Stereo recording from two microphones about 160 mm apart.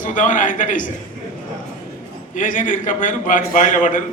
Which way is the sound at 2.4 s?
55° left (ahead or behind).